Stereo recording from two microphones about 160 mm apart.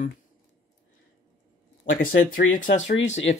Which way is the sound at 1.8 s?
60° left (ahead or behind).